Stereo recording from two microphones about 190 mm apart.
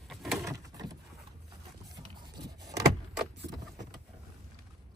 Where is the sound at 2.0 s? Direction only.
20° right (ahead or behind).